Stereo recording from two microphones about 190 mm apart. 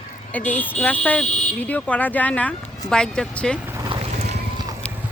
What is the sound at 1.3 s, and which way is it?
Speech, 40° left (ahead or behind).